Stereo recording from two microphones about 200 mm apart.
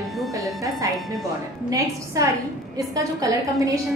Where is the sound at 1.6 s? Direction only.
15° right (ahead or behind).